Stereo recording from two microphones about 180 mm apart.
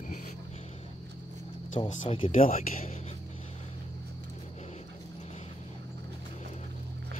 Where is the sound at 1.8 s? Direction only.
30° left (ahead or behind).